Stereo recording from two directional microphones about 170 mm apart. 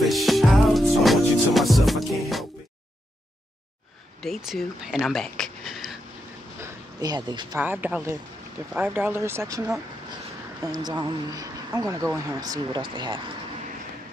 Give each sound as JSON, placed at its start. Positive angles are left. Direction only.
{"t": 0.0, "sound": "music", "side_deg": 0}
{"t": 4.2, "sound": "speech", "side_deg": 0}
{"t": 6.6, "sound": "a sound", "side_deg": -20}
{"t": 7.5, "sound": "speech", "side_deg": -10}